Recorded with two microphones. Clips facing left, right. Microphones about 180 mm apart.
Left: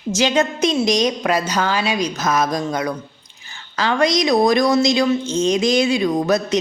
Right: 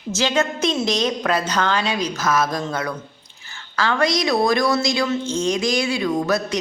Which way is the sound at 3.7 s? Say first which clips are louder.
Left 2 dB; 20° left (ahead or behind).